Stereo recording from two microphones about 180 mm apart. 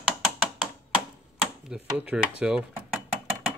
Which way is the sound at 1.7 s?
5° right (ahead or behind).